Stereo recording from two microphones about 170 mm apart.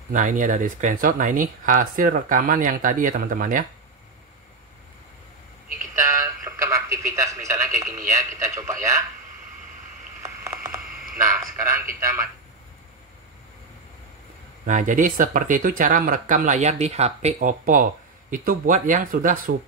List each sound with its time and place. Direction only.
0.1 s speech: 50° right (ahead or behind)
6.0 s radio: 20° right (ahead or behind)
10.2 s a sound: 15° right (ahead or behind)
12.0 s a man's voice: 15° right (ahead or behind)
14.7 s speech: 50° right (ahead or behind)